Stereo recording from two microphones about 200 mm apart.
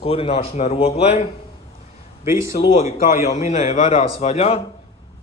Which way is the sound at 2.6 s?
30° left (ahead or behind).